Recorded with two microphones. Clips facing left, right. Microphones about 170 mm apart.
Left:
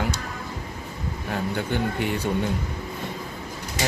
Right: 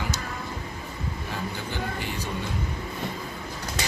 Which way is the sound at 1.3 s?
60° left (ahead or behind).